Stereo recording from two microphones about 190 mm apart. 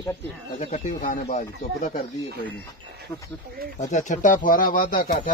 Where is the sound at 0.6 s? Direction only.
40° left (ahead or behind).